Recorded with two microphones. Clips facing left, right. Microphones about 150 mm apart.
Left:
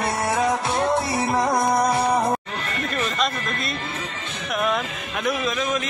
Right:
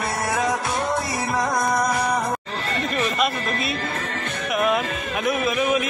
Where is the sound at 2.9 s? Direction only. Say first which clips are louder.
Right 2 dB; centre (ahead or behind).